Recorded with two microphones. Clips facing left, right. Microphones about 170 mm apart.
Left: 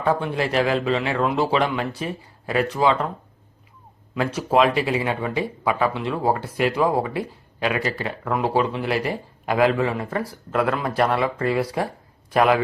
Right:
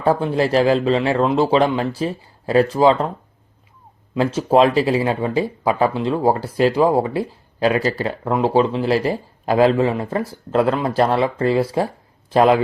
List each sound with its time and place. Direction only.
0.0 s speech: 35° right (ahead or behind)
4.1 s speech: 25° right (ahead or behind)